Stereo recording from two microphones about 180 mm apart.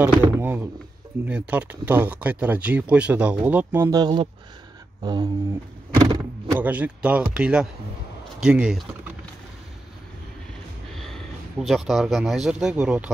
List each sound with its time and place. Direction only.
0.4 s a sound: 10° right (ahead or behind)
1.2 s speech: 10° right (ahead or behind); by 4.3 s 25° right (ahead or behind)
5.0 s a sound: 25° right (ahead or behind)
5.9 s power windows: 20° right (ahead or behind)
6.6 s speech: 10° right (ahead or behind)
10.9 s speech: centre (ahead or behind)